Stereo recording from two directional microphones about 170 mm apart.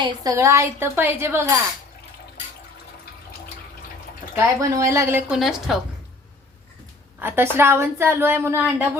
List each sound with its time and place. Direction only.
0.0 s a woman's voice: 20° right (ahead or behind)
4.4 s a woman's voice: 15° right (ahead or behind)
5.3 s a woman's voice: centre (ahead or behind)
7.2 s a woman's voice: 10° right (ahead or behind)